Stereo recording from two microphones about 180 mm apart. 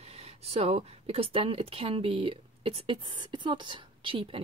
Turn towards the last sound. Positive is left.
turn(degrees=-30)  # may be behind; listen again after turning